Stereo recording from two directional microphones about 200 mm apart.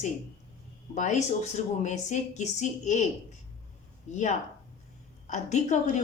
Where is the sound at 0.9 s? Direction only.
35° left (ahead or behind).